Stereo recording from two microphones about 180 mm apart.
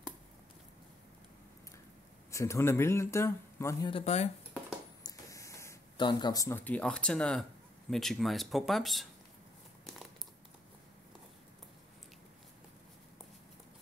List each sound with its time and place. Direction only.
2.3 s speech: 15° left (ahead or behind)
3.9 s speech: 35° left (ahead or behind)
5.0 s a sound: 15° left (ahead or behind)
7.9 s speech: centre (ahead or behind)